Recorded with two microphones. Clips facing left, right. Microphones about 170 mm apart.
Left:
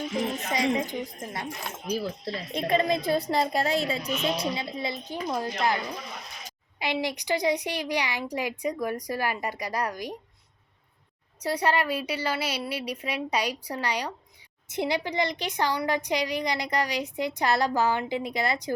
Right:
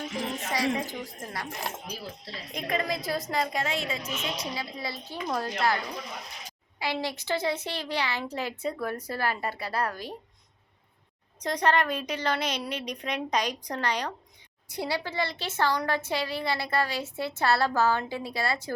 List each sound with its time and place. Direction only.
0.4 s a woman's voice: 20° left (ahead or behind)
2.2 s a woman's voice: 30° left (ahead or behind); by 5.7 s 15° left (ahead or behind)
6.7 s a woman's voice: 20° left (ahead or behind)
11.3 s a woman's voice: 10° left (ahead or behind)